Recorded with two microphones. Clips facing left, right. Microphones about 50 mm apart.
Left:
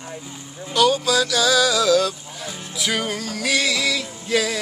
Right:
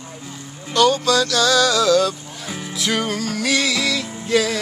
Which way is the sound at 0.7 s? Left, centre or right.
Centre.